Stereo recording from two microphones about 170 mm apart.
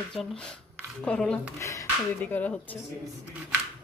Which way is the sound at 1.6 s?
20° left (ahead or behind).